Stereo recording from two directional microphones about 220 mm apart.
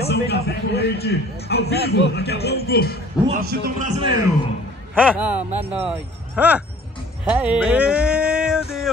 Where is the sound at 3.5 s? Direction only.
35° right (ahead or behind).